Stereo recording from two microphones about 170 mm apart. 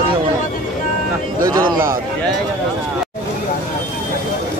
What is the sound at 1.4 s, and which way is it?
Speech, 25° right (ahead or behind).